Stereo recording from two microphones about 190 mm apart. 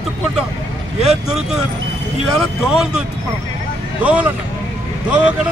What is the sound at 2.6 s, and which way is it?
Speech, centre (ahead or behind).